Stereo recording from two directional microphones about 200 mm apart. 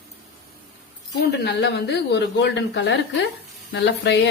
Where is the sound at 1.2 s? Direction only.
60° left (ahead or behind).